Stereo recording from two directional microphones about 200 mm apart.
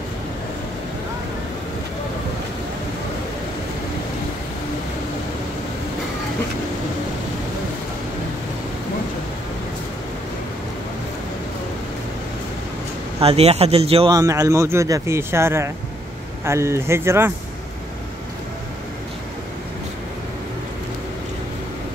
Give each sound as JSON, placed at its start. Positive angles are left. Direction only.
{"t": 13.2, "sound": "speech", "side_deg": -30}
{"t": 14.1, "sound": "speech", "side_deg": -15}